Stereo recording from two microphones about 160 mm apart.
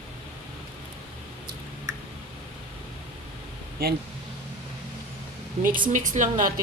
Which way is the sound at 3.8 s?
70° right (ahead or behind).